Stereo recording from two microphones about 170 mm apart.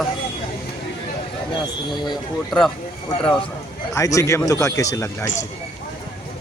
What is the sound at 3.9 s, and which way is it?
Speech, 20° left (ahead or behind).